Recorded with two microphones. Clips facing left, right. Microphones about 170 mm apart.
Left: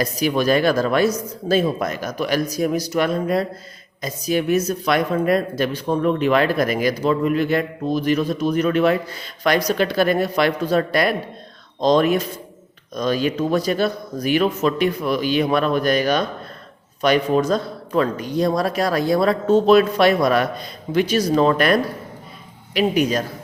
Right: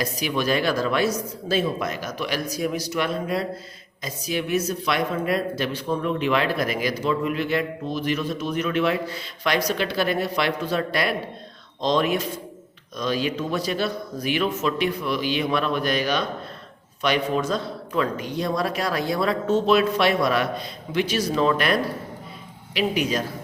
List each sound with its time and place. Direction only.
0.0 s speech: 45° left (ahead or behind)